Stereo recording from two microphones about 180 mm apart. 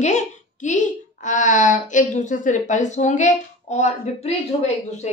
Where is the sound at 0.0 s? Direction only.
40° left (ahead or behind).